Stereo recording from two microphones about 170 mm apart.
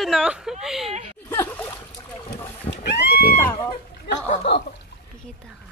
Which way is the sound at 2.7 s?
85° left.